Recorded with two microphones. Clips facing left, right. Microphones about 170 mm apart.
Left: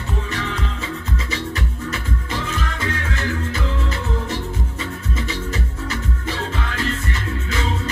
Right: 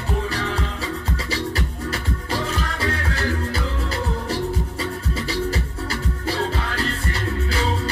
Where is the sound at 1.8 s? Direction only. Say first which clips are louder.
Right 1 dB; 35° right (ahead or behind).